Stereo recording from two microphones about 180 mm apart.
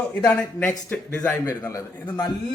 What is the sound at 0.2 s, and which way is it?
A man's voice, 20° left (ahead or behind).